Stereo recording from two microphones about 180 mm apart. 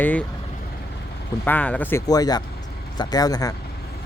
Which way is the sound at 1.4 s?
10° left (ahead or behind).